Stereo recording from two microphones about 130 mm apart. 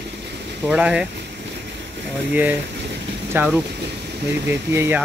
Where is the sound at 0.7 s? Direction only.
10° right (ahead or behind).